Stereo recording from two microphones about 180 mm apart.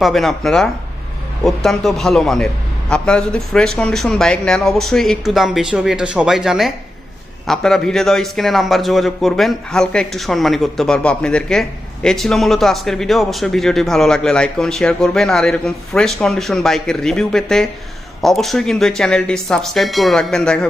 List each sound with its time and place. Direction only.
0.0 s speech: centre (ahead or behind)